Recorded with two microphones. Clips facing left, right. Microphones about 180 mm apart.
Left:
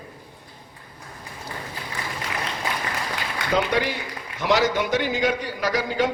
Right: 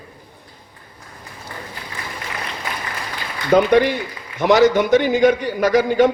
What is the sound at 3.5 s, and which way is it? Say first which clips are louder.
A man's voice: right 9 dB; 55° right (ahead or behind).